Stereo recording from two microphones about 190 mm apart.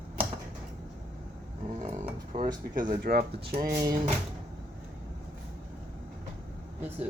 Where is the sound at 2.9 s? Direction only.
50° right (ahead or behind).